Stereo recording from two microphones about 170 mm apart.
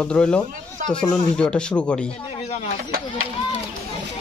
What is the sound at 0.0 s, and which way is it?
Speech, 5° left (ahead or behind).